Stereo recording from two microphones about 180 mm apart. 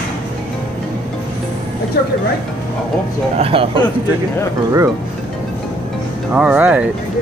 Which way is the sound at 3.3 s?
30° right (ahead or behind).